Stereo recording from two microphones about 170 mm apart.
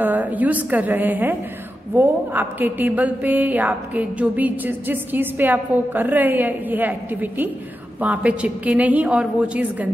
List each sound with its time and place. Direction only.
0.0 s a woman's voice: 10° right (ahead or behind)